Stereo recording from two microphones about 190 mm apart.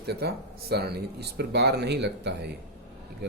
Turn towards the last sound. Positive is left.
turn(degrees=-60)  # may be behind; listen again after turning